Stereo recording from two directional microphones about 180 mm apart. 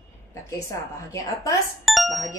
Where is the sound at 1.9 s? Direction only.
Centre (ahead or behind).